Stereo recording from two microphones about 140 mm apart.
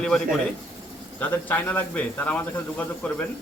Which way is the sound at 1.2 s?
15° left (ahead or behind).